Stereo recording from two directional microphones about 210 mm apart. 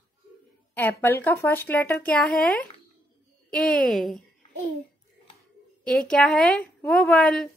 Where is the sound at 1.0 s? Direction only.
10° left (ahead or behind).